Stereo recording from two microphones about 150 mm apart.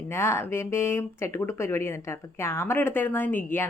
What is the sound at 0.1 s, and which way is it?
Speech, 15° left (ahead or behind).